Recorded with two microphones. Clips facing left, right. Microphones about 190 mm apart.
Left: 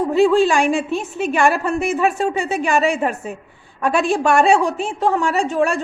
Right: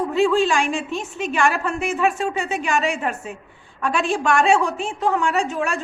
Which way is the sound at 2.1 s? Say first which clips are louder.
Left 4 dB; 35° left (ahead or behind).